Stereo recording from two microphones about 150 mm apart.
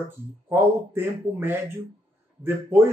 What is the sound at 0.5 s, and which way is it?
Speech, 15° right (ahead or behind).